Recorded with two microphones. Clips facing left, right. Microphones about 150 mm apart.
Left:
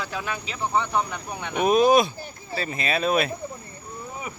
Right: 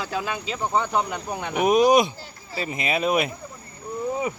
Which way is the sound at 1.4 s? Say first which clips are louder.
Right 1 dB; 15° right (ahead or behind).